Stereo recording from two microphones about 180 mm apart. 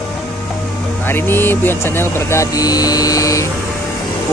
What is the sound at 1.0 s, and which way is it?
Speech, 10° left (ahead or behind).